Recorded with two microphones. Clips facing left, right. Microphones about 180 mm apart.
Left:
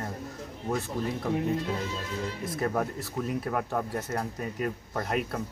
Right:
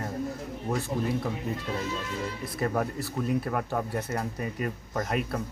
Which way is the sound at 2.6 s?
Centre (ahead or behind).